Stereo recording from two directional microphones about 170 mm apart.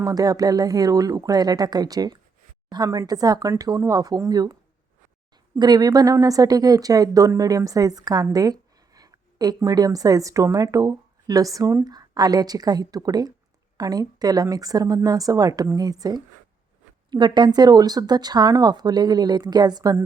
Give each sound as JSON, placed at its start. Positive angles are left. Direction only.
{"t": 0.0, "sound": "a woman's voice", "side_deg": -20}
{"t": 5.5, "sound": "a woman's voice", "side_deg": -25}